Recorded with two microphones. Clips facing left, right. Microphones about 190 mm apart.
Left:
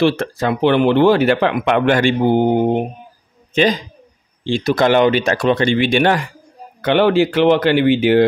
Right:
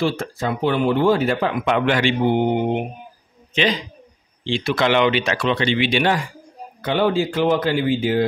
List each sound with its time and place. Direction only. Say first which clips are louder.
0.0 s speech: left 6 dB; 75° left (ahead or behind); by 6.2 s 55° left (ahead or behind)
6.8 s speech: left 6 dB; 75° left (ahead or behind)